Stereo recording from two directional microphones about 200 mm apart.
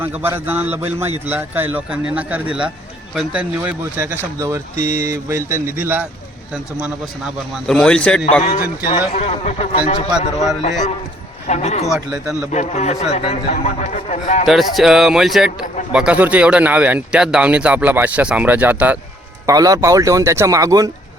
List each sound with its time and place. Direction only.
0.0 s a man's voice: 10° right (ahead or behind); by 8.4 s 5° left (ahead or behind)
9.1 s a man's voice: 30° left (ahead or behind)
14.4 s a man's voice: centre (ahead or behind); by 20.9 s 15° right (ahead or behind)